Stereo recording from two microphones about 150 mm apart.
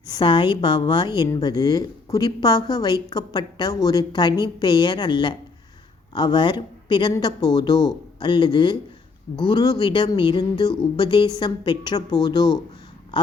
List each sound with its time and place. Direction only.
0.0 s a woman's voice: 30° left (ahead or behind)